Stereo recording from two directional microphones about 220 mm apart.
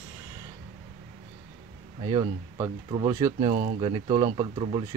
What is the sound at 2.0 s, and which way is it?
Speech, 20° right (ahead or behind).